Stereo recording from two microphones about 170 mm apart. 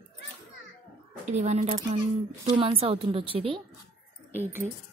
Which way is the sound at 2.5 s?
35° right (ahead or behind).